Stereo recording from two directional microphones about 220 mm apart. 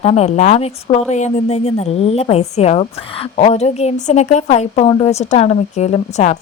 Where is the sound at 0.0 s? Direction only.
30° left (ahead or behind).